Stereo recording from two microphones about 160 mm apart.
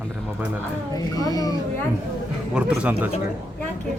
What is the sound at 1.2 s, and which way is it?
Speech, 25° left (ahead or behind).